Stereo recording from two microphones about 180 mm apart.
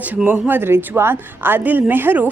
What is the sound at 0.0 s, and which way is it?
A woman's voice, 10° right (ahead or behind).